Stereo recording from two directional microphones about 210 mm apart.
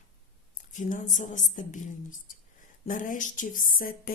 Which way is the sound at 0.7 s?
35° left (ahead or behind).